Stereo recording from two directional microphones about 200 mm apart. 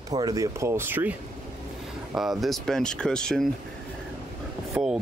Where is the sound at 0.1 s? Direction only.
20° right (ahead or behind).